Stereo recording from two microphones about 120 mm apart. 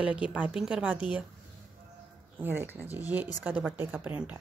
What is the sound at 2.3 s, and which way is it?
A woman's voice, 15° right (ahead or behind).